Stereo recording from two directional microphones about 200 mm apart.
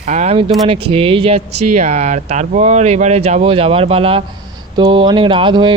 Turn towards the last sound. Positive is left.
turn(degrees=-25)  # may be behind; listen again after turning